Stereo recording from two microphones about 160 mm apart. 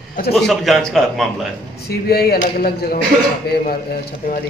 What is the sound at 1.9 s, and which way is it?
Speech, 75° left (ahead or behind).